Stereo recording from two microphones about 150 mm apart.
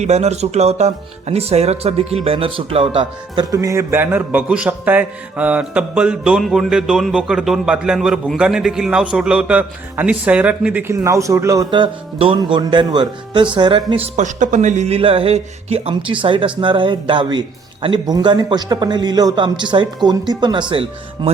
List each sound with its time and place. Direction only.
0.0 s speech: 45° right (ahead or behind)
3.5 s a man's voice: 20° right (ahead or behind)
11.7 s speech: 35° right (ahead or behind)
13.9 s a man's voice: 50° right (ahead or behind); by 21.2 s 30° right (ahead or behind)